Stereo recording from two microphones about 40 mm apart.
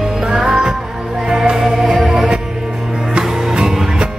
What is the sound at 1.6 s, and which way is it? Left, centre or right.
Music, centre.